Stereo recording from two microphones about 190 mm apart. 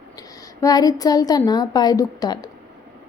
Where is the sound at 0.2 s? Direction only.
20° left (ahead or behind).